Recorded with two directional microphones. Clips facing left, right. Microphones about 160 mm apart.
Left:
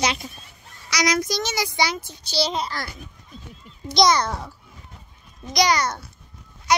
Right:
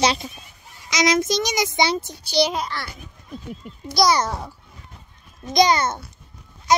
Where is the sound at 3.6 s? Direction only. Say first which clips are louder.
Right 9 dB; 60° right (ahead or behind).